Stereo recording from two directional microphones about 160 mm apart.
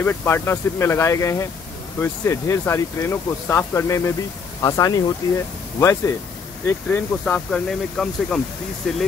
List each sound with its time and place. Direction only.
0.0 s speech: 15° left (ahead or behind)